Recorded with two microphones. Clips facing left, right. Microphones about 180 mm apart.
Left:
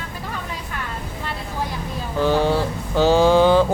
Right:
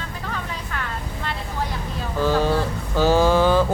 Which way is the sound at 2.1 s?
20° left (ahead or behind).